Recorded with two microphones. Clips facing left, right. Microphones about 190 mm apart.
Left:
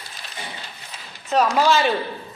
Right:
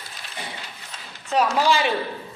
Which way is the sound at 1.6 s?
10° right (ahead or behind).